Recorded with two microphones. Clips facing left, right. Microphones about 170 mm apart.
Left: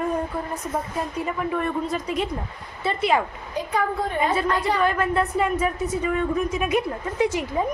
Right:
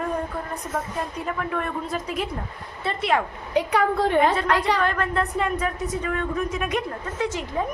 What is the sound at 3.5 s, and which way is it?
Speech, 75° right (ahead or behind).